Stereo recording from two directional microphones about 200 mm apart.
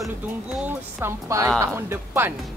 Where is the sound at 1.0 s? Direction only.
15° right (ahead or behind).